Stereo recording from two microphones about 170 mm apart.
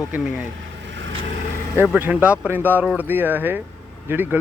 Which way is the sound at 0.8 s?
90° right.